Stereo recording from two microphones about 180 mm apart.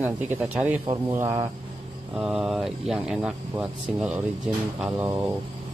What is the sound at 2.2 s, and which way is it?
Speech, 5° right (ahead or behind).